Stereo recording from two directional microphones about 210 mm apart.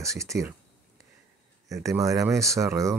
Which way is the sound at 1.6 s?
15° right (ahead or behind).